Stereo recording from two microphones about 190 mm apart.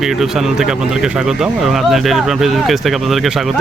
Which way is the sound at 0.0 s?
Centre (ahead or behind).